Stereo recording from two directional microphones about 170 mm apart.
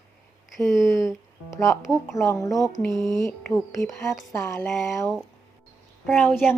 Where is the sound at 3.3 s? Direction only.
10° left (ahead or behind).